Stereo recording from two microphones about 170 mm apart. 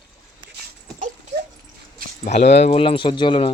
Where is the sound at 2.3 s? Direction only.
40° left (ahead or behind).